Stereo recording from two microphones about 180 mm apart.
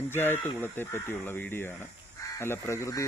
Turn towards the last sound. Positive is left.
turn(degrees=15)  # may be behind; listen again after turning